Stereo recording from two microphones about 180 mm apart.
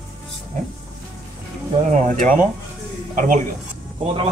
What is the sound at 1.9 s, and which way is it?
A man's voice, 40° right (ahead or behind).